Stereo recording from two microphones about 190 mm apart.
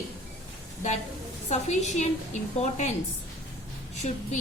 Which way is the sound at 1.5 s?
35° left (ahead or behind).